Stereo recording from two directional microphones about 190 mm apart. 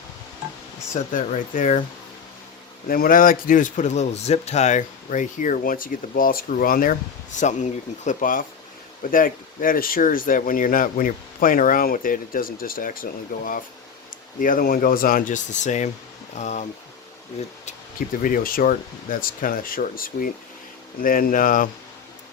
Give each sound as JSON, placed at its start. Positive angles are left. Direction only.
{"t": 0.9, "sound": "speech", "side_deg": 40}
{"t": 2.8, "sound": "speech", "side_deg": 50}
{"t": 17.7, "sound": "speech", "side_deg": 45}